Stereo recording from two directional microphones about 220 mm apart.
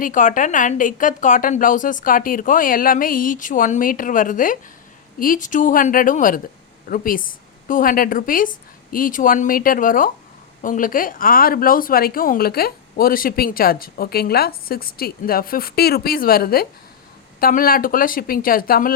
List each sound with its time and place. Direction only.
0.0 s speech: 35° left (ahead or behind)